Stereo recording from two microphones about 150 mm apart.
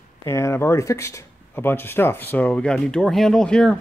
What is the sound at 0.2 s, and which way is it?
Speech, 20° left (ahead or behind).